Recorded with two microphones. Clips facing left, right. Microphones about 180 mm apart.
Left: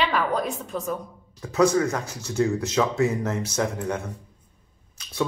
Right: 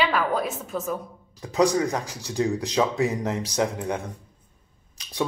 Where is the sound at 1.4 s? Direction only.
15° right (ahead or behind).